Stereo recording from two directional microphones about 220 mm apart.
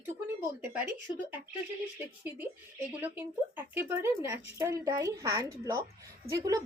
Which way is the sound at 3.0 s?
10° right (ahead or behind).